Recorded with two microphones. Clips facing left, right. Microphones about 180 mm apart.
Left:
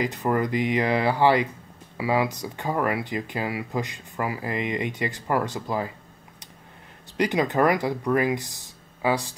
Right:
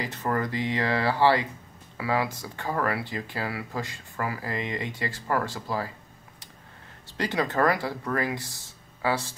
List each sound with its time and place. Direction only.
0.0 s speech: 15° left (ahead or behind)
7.2 s speech: 15° left (ahead or behind)